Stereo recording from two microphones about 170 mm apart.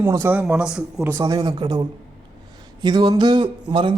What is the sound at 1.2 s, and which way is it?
Speech, 20° right (ahead or behind).